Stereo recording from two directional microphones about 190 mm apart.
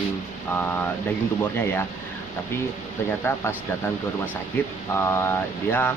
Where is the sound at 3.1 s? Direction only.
15° left (ahead or behind).